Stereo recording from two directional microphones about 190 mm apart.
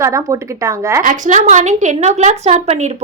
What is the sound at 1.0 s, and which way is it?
A woman's voice, 40° right (ahead or behind).